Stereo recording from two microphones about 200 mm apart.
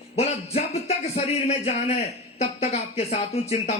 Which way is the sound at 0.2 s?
30° left (ahead or behind).